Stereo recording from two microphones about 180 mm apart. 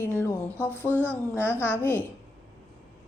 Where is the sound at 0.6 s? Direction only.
10° right (ahead or behind).